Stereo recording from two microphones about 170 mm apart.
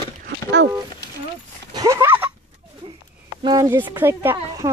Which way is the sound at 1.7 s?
20° right (ahead or behind).